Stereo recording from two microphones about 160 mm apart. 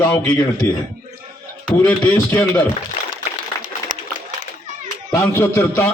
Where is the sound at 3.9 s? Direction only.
25° right (ahead or behind).